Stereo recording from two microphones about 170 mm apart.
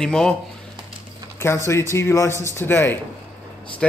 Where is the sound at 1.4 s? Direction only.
15° left (ahead or behind).